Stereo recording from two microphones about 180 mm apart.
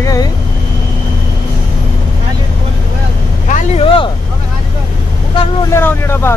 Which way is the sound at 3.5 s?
30° left (ahead or behind).